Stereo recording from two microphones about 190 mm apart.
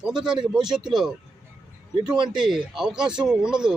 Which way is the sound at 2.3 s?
Centre (ahead or behind).